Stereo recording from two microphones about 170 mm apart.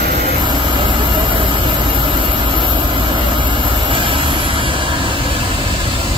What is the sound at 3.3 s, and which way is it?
Vehicle, 30° right (ahead or behind).